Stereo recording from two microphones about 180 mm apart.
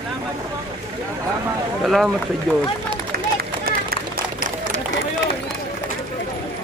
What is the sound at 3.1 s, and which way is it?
Run, 55° right (ahead or behind).